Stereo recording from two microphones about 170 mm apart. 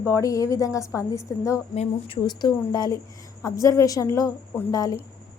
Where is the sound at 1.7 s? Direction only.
40° left (ahead or behind).